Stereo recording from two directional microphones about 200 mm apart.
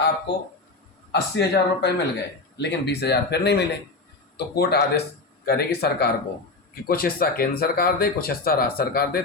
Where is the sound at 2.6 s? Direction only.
60° left (ahead or behind).